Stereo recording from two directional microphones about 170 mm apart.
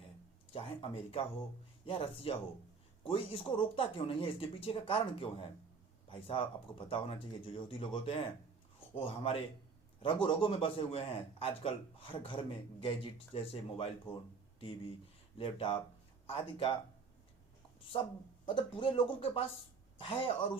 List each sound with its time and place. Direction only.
0.5 s a man's voice: 30° left (ahead or behind)
15.4 s a man's voice: 35° left (ahead or behind)
18.4 s a man's voice: 30° left (ahead or behind)